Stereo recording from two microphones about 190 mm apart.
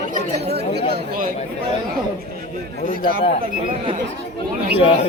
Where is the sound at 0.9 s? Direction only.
45° right (ahead or behind).